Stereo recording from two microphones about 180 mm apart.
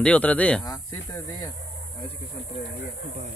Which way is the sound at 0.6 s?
20° left (ahead or behind).